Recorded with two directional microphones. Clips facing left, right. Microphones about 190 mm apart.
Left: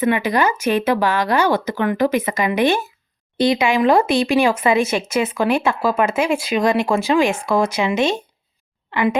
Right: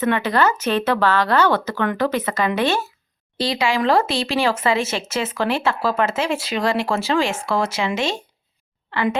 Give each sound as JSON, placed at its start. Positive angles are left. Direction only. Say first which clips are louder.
{"t": 0.0, "sound": "speech", "louder": "left 1 dB", "side_deg": 10}